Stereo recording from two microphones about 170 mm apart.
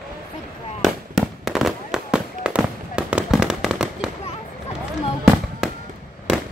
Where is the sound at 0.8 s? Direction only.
Centre (ahead or behind).